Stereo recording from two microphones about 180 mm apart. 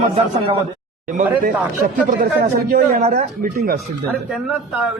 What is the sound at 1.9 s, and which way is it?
Speech, 50° right (ahead or behind).